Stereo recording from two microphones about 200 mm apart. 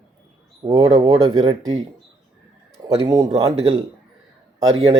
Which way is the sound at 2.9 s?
20° right (ahead or behind).